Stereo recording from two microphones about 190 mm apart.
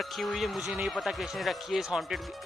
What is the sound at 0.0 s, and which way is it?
Speech, centre (ahead or behind).